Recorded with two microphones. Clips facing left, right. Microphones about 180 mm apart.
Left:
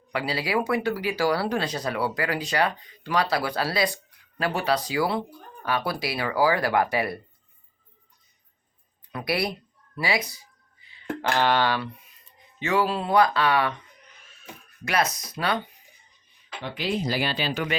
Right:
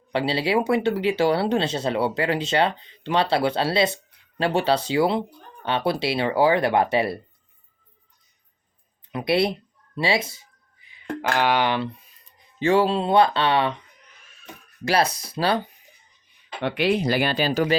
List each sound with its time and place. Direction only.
0.1 s speech: 30° right (ahead or behind)
9.1 s speech: 25° right (ahead or behind)
11.2 s speech: 10° right (ahead or behind)
12.5 s speech: 30° right (ahead or behind)
14.8 s speech: 30° right (ahead or behind)
16.6 s speech: 65° right (ahead or behind); by 17.7 s 35° right (ahead or behind)